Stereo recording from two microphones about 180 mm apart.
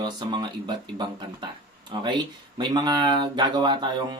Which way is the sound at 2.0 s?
25° right (ahead or behind).